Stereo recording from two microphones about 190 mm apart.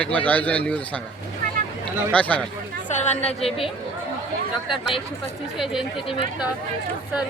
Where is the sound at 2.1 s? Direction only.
5° left (ahead or behind).